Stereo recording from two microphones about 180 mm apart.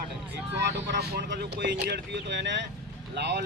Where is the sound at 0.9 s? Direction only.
65° right (ahead or behind).